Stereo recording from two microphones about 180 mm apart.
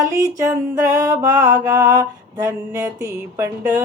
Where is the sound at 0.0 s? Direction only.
15° right (ahead or behind).